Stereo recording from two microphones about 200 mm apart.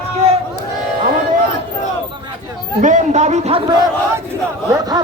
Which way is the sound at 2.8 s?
40° right (ahead or behind).